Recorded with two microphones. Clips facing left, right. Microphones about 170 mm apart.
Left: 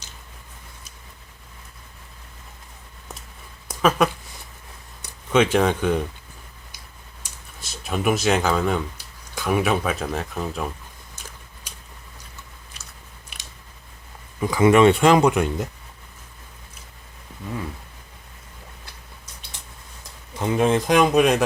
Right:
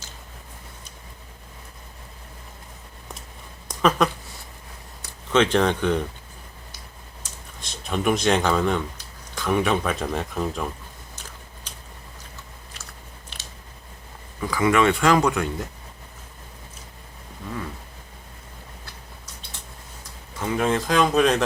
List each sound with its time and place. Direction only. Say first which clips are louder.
3.7 s a sound: left 1 dB; 5° left (ahead or behind)
5.3 s speech: left 1 dB; 10° left (ahead or behind)
7.6 s speech: left 1 dB; 5° left (ahead or behind)
14.4 s speech: left 5 dB; 20° left (ahead or behind)
20.4 s speech: left 3 dB; 20° left (ahead or behind)